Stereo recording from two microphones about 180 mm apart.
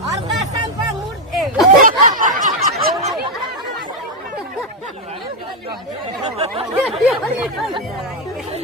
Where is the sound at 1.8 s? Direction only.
50° right (ahead or behind).